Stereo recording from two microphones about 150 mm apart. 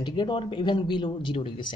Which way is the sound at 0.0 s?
30° left (ahead or behind).